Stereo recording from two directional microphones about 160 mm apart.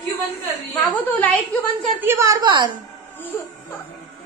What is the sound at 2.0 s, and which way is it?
Speech, 15° right (ahead or behind).